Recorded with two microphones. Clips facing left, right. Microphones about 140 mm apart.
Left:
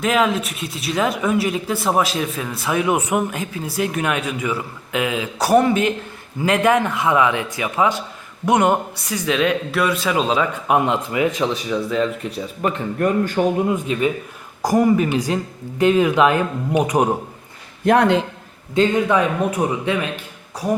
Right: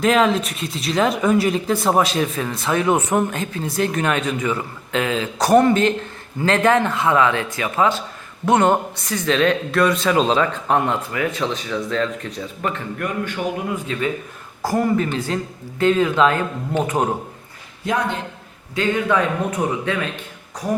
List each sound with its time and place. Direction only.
0.0 s a man's voice: 5° left (ahead or behind)
13.0 s speech: 35° left (ahead or behind)
13.7 s a man's voice: 20° left (ahead or behind)
17.8 s a man's voice: 65° left (ahead or behind)
19.0 s a man's voice: 10° left (ahead or behind)